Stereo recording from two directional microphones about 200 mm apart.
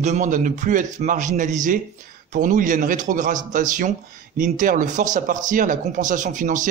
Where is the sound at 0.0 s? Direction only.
35° right (ahead or behind).